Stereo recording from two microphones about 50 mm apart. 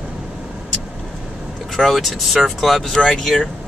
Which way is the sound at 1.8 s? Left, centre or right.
Centre.